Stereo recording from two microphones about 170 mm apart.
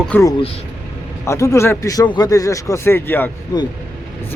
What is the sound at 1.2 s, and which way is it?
Speech, 15° left (ahead or behind).